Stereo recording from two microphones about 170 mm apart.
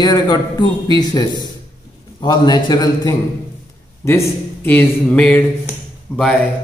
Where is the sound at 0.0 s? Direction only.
25° left (ahead or behind); by 6.5 s 5° left (ahead or behind).